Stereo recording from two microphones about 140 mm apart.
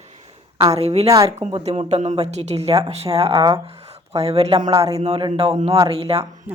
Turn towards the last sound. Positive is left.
turn(degrees=-45)  # may be behind; listen again after turning